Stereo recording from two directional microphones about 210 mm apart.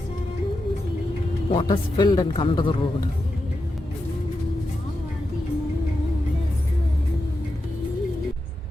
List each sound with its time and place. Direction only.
1.5 s speech: 20° left (ahead or behind)